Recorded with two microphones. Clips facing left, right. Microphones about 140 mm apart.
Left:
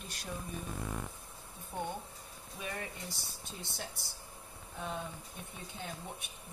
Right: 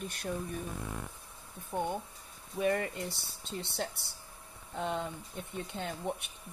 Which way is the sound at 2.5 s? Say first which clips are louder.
Right 11 dB; 60° right (ahead or behind).